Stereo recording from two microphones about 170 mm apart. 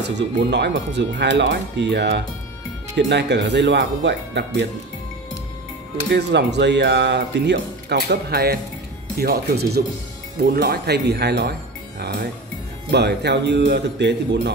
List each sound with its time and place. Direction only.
0.0 s speech: 90° right
6.0 s speech: 90° right; by 11.5 s 75° right (ahead or behind)
12.9 s speech: 85° right